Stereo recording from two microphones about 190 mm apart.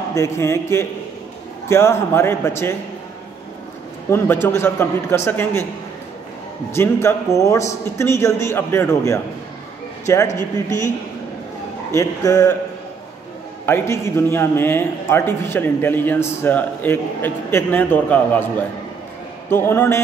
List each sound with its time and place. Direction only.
0.1 s a man's voice: 15° left (ahead or behind)
4.1 s a man's voice: 10° left (ahead or behind)
6.7 s a man's voice: 15° left (ahead or behind)
11.9 s a man's voice: 15° left (ahead or behind)
13.7 s a man's voice: 10° left (ahead or behind)
19.5 s a man's voice: 10° left (ahead or behind)